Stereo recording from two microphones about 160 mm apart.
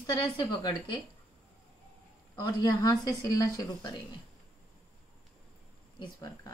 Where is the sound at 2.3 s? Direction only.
25° left (ahead or behind).